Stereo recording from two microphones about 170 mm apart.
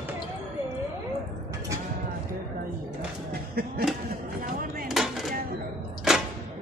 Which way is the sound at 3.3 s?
65° right (ahead or behind).